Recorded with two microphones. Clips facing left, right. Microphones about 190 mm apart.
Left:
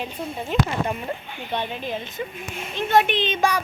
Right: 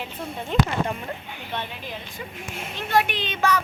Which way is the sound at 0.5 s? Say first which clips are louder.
Right 1 dB; 5° left (ahead or behind).